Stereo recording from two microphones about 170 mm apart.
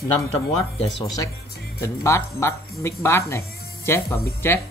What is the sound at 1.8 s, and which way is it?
Speech, 15° left (ahead or behind).